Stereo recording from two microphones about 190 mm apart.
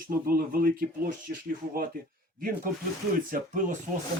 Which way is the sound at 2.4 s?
45° right (ahead or behind).